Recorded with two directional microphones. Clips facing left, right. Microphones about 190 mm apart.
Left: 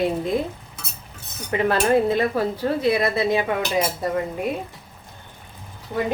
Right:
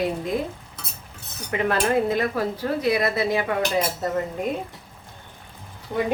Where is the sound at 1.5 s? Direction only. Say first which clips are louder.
Left 3 dB; 30° left (ahead or behind).